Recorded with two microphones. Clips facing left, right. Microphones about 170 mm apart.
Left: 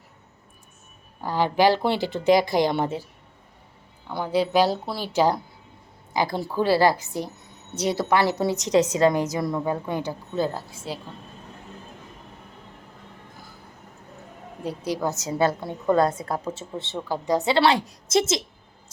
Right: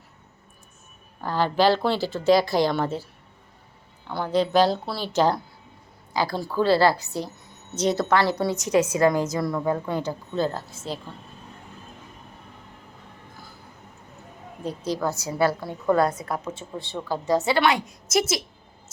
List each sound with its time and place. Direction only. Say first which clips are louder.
1.2 s a woman's voice: left 1 dB; 15° left (ahead or behind)
14.6 s a woman's voice: even; 10° left (ahead or behind)
17.6 s a woman's voice: left 2 dB; 30° left (ahead or behind)